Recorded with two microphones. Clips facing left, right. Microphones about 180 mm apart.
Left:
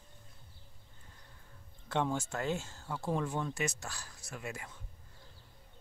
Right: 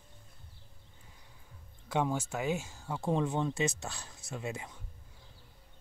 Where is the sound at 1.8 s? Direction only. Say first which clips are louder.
Right 2 dB; 10° right (ahead or behind).